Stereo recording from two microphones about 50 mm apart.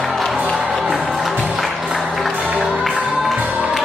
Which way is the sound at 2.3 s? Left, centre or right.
Right.